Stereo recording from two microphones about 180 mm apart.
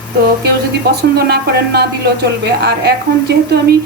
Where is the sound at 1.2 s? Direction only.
65° right (ahead or behind).